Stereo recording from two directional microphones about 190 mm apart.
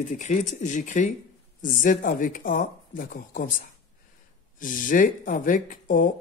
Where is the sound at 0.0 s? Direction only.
40° left (ahead or behind).